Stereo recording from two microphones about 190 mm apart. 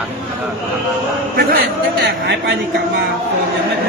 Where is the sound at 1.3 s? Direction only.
50° right (ahead or behind).